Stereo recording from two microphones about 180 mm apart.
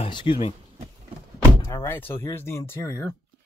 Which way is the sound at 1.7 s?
15° left (ahead or behind).